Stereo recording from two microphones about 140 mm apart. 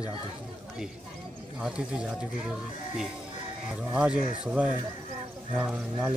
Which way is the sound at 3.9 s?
10° right (ahead or behind).